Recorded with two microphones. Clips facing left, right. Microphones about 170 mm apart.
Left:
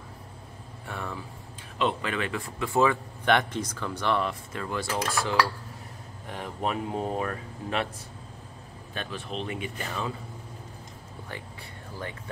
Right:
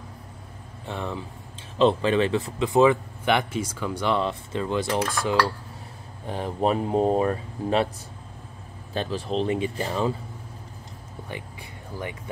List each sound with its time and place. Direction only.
0.8 s speech: 20° right (ahead or behind)
3.3 s speech: 5° right (ahead or behind)
4.2 s speech: 25° right (ahead or behind)
6.2 s speech: 30° right (ahead or behind)
8.9 s speech: 35° right (ahead or behind)